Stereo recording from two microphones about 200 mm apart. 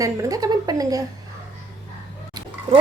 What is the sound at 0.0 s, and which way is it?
A woman's voice, 15° right (ahead or behind).